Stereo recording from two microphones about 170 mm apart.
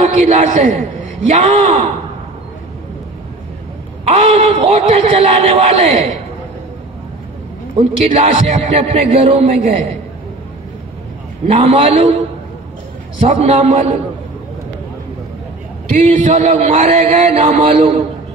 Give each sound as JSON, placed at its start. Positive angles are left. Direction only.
{"t": 0.0, "sound": "a man's voice", "side_deg": -45}
{"t": 4.0, "sound": "a man's voice", "side_deg": -40}
{"t": 7.7, "sound": "a man's voice", "side_deg": -35}
{"t": 11.4, "sound": "a man's voice", "side_deg": -40}
{"t": 13.2, "sound": "a man's voice", "side_deg": -35}
{"t": 15.9, "sound": "a man's voice", "side_deg": -45}